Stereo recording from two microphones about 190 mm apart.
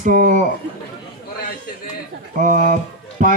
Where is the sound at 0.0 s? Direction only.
45° right (ahead or behind).